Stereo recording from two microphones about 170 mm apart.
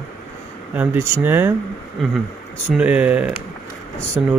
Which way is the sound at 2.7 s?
10° right (ahead or behind).